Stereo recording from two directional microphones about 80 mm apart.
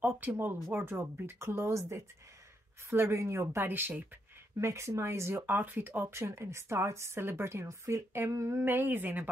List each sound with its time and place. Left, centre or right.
0.0 s a woman's voice: right
4.6 s a woman's voice: right
5.5 s a woman's voice: right
8.5 s speech: right